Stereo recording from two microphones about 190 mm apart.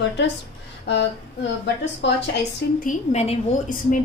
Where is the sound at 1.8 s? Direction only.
70° left (ahead or behind).